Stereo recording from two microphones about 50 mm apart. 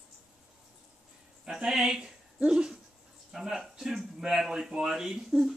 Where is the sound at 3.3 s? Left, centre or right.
Centre.